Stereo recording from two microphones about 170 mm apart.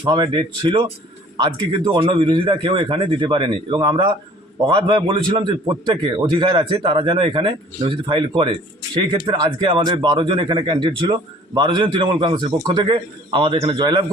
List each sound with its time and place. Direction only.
0.0 s a man's voice: 30° right (ahead or behind)